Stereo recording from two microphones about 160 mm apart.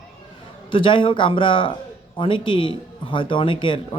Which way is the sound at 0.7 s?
30° left (ahead or behind).